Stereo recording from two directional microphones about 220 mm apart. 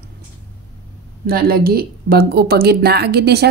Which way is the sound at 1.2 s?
45° right (ahead or behind).